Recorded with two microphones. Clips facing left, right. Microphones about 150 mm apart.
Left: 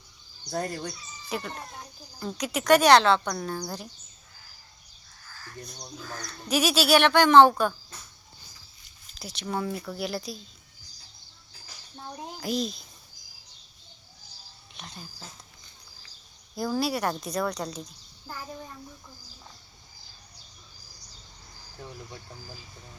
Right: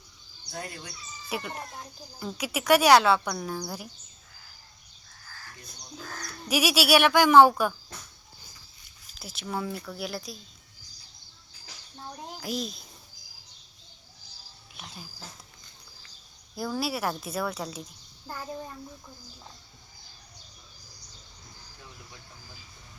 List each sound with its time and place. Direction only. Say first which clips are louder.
0.5 s speech: left 8 dB; 40° left (ahead or behind)
1.3 s speech: even; 10° right (ahead or behind)
6.5 s speech: left 1 dB; 10° right (ahead or behind)
9.1 s a woman's voice: left 2 dB; centre (ahead or behind)
12.1 s a woman's voice: left 4 dB; 5° left (ahead or behind)
14.8 s speech: left 1 dB; 5° right (ahead or behind)
16.6 s a woman's voice: left 3 dB; centre (ahead or behind)